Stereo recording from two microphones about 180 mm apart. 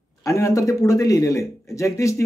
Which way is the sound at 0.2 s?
15° left (ahead or behind).